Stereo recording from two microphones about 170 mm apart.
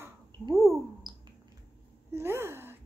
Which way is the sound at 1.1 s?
25° right (ahead or behind).